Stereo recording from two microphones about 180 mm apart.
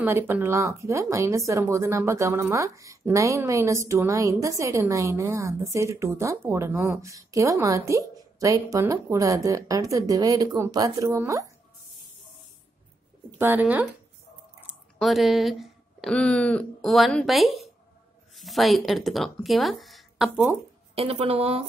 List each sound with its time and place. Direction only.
0.0 s a woman's voice: 10° right (ahead or behind)
13.4 s a woman's voice: 10° right (ahead or behind)
15.0 s speech: centre (ahead or behind)
20.9 s a woman's voice: 35° right (ahead or behind)